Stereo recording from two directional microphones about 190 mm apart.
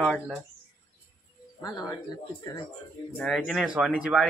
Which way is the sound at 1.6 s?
20° left (ahead or behind).